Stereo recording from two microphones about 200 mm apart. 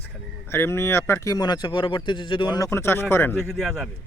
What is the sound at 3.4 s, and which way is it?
Speech, centre (ahead or behind).